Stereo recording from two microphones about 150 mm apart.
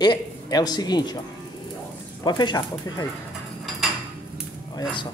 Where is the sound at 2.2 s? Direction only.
30° left (ahead or behind).